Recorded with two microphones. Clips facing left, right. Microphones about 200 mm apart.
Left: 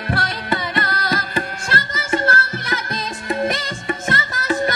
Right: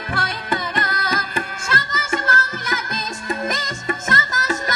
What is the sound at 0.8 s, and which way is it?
Carnatic music, 35° left (ahead or behind).